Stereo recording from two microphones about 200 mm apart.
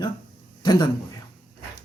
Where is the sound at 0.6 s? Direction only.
20° left (ahead or behind).